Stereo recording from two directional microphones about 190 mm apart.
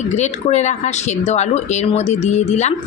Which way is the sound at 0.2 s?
35° left (ahead or behind).